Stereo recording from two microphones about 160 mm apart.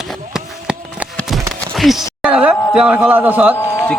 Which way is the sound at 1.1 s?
5° left (ahead or behind).